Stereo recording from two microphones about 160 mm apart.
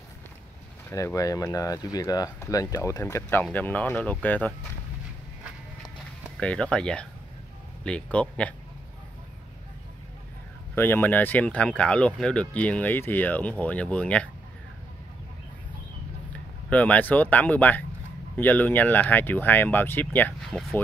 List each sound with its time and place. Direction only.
0.8 s speech: 20° left (ahead or behind)
6.4 s speech: 5° left (ahead or behind)
10.7 s speech: 15° left (ahead or behind)
16.6 s speech: 10° left (ahead or behind)